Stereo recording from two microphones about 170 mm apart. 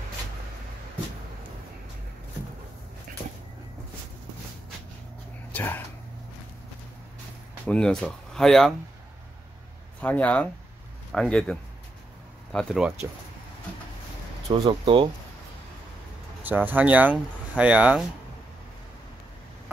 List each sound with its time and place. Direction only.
5.5 s speech: 10° left (ahead or behind)
7.6 s speech: 5° left (ahead or behind)
9.9 s speech: 10° left (ahead or behind)
12.5 s speech: centre (ahead or behind)
14.5 s speech: 30° right (ahead or behind)
16.4 s speech: 10° right (ahead or behind)